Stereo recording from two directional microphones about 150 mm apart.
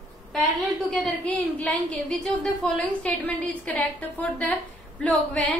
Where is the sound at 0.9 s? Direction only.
5° left (ahead or behind).